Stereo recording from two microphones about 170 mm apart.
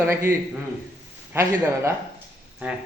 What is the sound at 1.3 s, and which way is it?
Speech, 15° right (ahead or behind).